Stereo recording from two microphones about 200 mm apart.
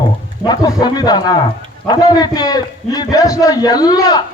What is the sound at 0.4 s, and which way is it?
A man's voice, 20° left (ahead or behind).